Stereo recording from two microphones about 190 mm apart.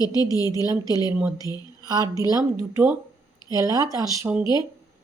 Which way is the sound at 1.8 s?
20° right (ahead or behind).